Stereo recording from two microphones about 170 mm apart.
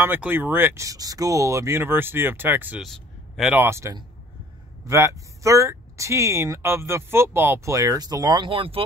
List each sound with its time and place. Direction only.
0.0 s speech: 10° right (ahead or behind); by 8.8 s 30° right (ahead or behind)